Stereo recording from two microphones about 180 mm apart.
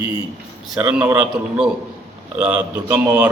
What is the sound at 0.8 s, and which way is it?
A man's voice, 5° right (ahead or behind).